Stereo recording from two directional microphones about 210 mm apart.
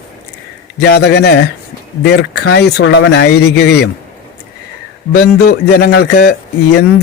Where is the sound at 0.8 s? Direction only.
50° left (ahead or behind).